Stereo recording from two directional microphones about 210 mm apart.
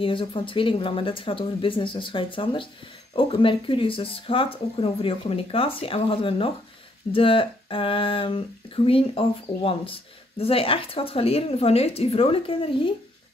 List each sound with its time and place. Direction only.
0.0 s speech: 25° left (ahead or behind)